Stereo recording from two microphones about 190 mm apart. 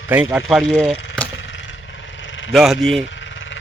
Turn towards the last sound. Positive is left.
turn(degrees=75)  # may be behind; listen again after turning